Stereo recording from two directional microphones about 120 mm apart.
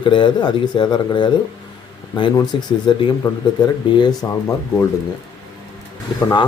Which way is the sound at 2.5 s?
45° left (ahead or behind).